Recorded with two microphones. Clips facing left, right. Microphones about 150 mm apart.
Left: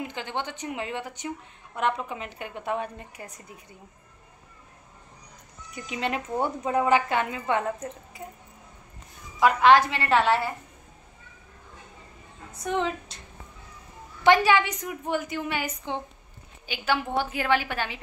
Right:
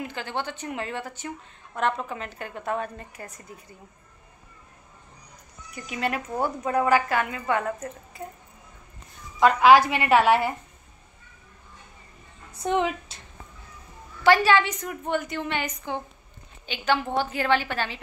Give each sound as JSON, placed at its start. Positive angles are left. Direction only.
{"t": 0.0, "sound": "a woman's voice", "side_deg": 15}
{"t": 5.8, "sound": "a woman's voice", "side_deg": 20}
{"t": 9.6, "sound": "speech", "side_deg": -10}
{"t": 12.5, "sound": "a woman's voice", "side_deg": -20}
{"t": 14.2, "sound": "a woman's voice", "side_deg": 15}